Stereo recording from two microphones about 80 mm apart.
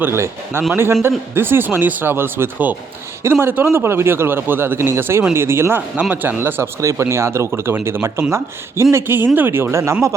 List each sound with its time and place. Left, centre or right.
0.0 s speech: right